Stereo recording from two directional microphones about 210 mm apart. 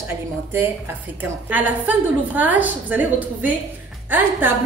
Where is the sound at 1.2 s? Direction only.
10° right (ahead or behind).